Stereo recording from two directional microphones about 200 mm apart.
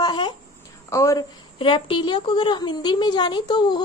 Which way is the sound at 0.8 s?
15° left (ahead or behind).